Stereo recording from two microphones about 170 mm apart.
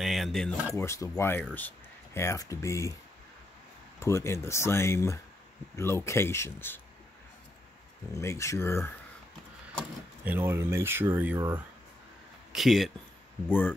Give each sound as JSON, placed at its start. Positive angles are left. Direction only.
{"t": 0.0, "sound": "a sound", "side_deg": 0}
{"t": 0.7, "sound": "speech", "side_deg": 15}
{"t": 4.0, "sound": "speech", "side_deg": 15}
{"t": 8.1, "sound": "speech", "side_deg": 15}
{"t": 10.2, "sound": "speech", "side_deg": -10}
{"t": 12.5, "sound": "speech", "side_deg": 0}
{"t": 13.5, "sound": "speech", "side_deg": 10}